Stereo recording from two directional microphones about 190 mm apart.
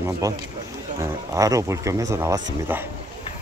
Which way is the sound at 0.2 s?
20° right (ahead or behind).